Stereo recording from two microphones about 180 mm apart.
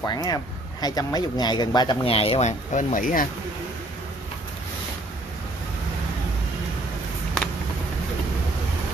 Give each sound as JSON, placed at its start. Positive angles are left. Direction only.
{"t": 0.0, "sound": "speech", "side_deg": 20}